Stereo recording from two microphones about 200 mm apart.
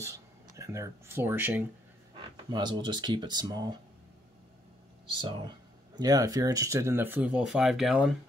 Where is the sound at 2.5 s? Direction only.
20° right (ahead or behind).